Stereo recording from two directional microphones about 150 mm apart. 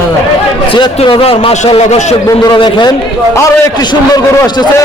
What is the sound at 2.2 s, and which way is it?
A man's voice, 25° left (ahead or behind).